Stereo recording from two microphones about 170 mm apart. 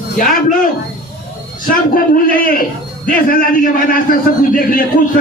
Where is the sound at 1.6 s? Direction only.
55° left (ahead or behind).